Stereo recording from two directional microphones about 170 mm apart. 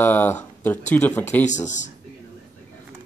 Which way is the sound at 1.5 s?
45° left (ahead or behind).